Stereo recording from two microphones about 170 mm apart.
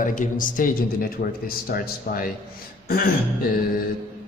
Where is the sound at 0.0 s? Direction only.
50° left (ahead or behind).